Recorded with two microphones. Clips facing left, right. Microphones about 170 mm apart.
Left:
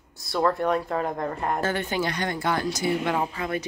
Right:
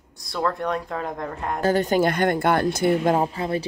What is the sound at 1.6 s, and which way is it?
Speech, 40° right (ahead or behind).